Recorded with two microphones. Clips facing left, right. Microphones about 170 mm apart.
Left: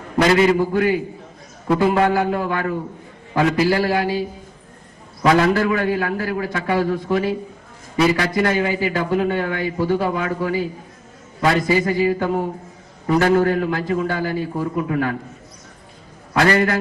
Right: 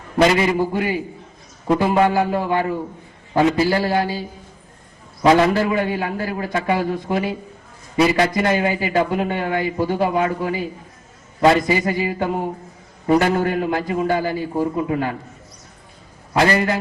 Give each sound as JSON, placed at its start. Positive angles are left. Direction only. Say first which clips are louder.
{"t": 0.2, "sound": "a man's voice", "louder": "left 1 dB", "side_deg": -20}
{"t": 5.2, "sound": "a man's voice", "louder": "right 1 dB", "side_deg": -25}
{"t": 16.4, "sound": "a man's voice", "louder": "left 1 dB", "side_deg": -20}